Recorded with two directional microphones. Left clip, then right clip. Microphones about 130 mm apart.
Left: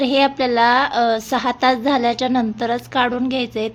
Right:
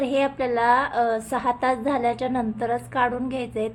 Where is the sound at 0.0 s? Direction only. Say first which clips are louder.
Left 6 dB; 30° left (ahead or behind).